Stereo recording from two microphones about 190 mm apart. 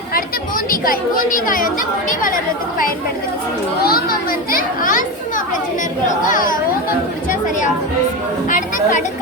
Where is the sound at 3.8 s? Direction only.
50° left (ahead or behind).